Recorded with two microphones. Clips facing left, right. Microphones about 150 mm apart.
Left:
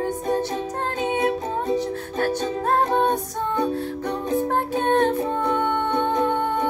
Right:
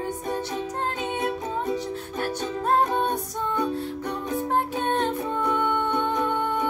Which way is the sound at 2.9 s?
55° left (ahead or behind).